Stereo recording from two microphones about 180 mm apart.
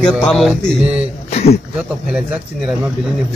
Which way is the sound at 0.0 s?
Centre (ahead or behind).